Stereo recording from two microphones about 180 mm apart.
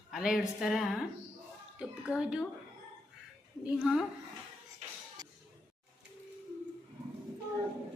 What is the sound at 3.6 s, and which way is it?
Speech, centre (ahead or behind).